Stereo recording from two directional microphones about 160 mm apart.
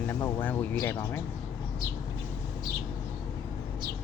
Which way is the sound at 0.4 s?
10° left (ahead or behind).